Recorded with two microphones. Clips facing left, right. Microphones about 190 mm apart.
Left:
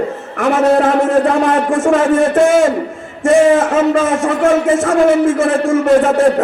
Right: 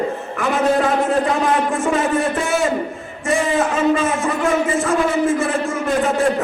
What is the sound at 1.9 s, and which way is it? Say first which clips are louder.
Speech: left 7 dB; 90° left.